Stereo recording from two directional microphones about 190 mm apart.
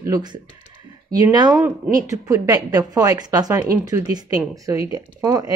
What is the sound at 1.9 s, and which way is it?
A woman's voice, 15° right (ahead or behind).